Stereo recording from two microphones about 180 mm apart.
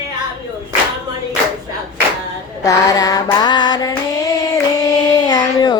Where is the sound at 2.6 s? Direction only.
20° left (ahead or behind).